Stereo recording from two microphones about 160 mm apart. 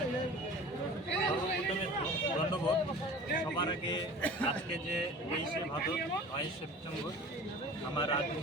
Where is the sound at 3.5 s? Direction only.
30° left (ahead or behind).